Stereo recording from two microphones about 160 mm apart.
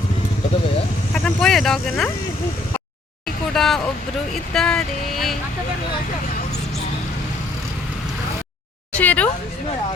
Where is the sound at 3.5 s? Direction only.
Centre (ahead or behind).